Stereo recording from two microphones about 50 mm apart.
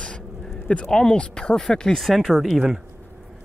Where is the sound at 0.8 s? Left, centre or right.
Centre.